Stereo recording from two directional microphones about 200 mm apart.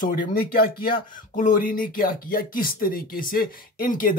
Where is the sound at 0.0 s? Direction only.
45° left (ahead or behind).